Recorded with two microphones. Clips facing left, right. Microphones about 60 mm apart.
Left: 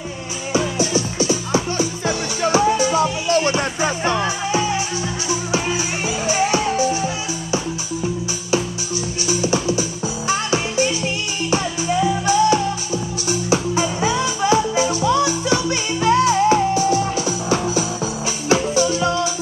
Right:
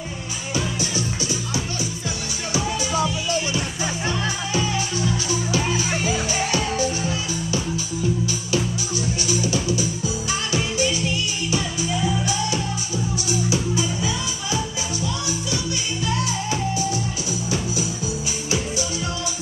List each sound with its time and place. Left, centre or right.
0.5 s music: left
3.3 s music: left
4.2 s music: left
9.3 s music: left
16.0 s music: left
16.3 s music: left
18.5 s music: left